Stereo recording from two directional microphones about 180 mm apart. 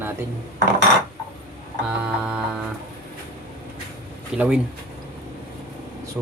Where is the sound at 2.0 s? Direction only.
5° right (ahead or behind).